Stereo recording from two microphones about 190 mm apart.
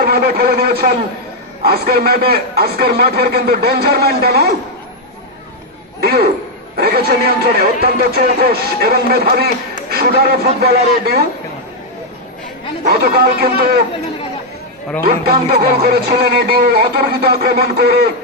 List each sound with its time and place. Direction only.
0.0 s a man's voice: 55° right (ahead or behind)
6.0 s speech: 55° right (ahead or behind)
12.9 s a man's voice: 55° right (ahead or behind)
15.0 s speech: 55° right (ahead or behind)